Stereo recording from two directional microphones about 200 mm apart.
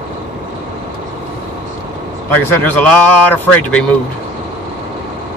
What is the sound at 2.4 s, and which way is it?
Speech, 10° left (ahead or behind).